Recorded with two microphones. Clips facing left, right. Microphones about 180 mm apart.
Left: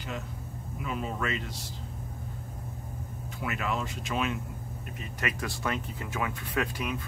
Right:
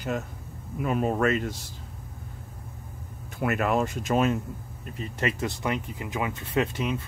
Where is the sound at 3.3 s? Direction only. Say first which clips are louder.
Right 8 dB; 50° right (ahead or behind).